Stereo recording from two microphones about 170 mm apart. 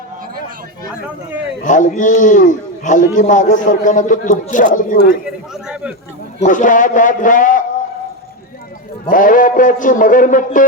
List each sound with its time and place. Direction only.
1.6 s a man's voice: 50° left (ahead or behind)
5.2 s a man's voice: 5° right (ahead or behind)
6.4 s a man's voice: 50° left (ahead or behind)
9.0 s a man's voice: 55° left (ahead or behind)